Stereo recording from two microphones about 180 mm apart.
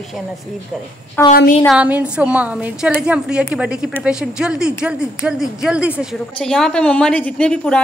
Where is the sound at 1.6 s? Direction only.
5° right (ahead or behind).